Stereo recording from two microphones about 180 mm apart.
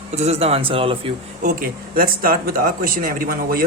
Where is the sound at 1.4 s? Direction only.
55° right (ahead or behind).